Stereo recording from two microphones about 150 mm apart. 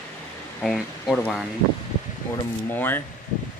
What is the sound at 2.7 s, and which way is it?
Speech, 15° left (ahead or behind).